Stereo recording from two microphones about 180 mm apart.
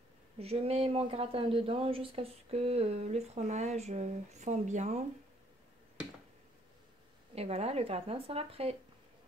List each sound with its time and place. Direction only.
0.4 s speech: 35° right (ahead or behind)
7.3 s speech: 35° right (ahead or behind)